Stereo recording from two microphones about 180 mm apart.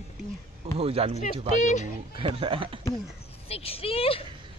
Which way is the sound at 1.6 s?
40° left (ahead or behind).